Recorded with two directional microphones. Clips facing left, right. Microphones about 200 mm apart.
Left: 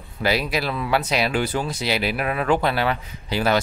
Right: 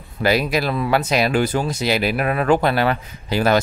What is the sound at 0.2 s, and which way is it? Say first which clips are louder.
Speech: right 4 dB; 45° right (ahead or behind).